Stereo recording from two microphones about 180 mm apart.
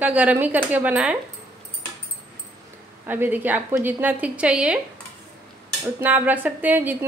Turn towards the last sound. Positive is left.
turn(degrees=-10)  # may be behind; listen again after turning